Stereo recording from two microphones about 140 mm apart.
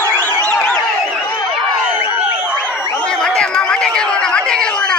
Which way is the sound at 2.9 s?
5° left (ahead or behind).